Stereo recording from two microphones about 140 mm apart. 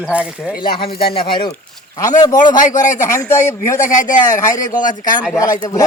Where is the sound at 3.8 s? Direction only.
65° left (ahead or behind).